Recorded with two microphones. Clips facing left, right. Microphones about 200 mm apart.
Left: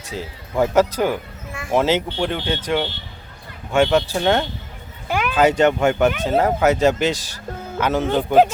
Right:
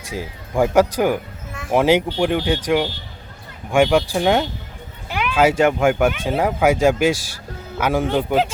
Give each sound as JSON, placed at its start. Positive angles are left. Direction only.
{"t": 0.0, "sound": "speech", "side_deg": -10}
{"t": 5.0, "sound": "a sound", "side_deg": 45}
{"t": 5.3, "sound": "speech", "side_deg": -10}